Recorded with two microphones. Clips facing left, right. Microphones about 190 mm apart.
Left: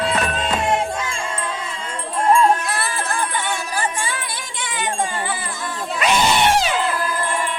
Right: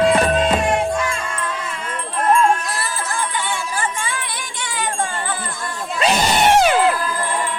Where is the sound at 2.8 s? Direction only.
60° left (ahead or behind).